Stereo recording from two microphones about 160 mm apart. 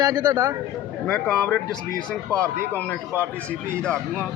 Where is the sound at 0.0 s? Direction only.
25° right (ahead or behind).